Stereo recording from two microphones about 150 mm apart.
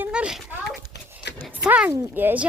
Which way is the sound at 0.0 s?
5° right (ahead or behind).